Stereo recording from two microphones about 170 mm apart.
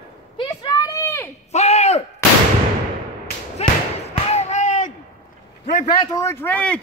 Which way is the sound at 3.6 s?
40° left (ahead or behind).